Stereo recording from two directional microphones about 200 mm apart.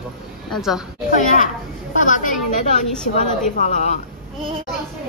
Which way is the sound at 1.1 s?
40° left (ahead or behind).